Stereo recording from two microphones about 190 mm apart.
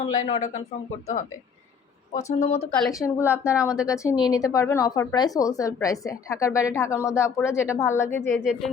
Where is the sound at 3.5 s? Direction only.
5° right (ahead or behind).